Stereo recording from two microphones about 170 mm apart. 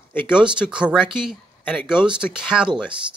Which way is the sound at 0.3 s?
5° right (ahead or behind).